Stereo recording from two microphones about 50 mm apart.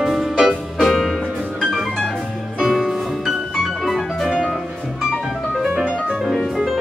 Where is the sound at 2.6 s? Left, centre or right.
Centre.